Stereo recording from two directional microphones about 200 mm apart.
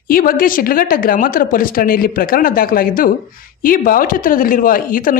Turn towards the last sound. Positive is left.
turn(degrees=45)  # may be behind; listen again after turning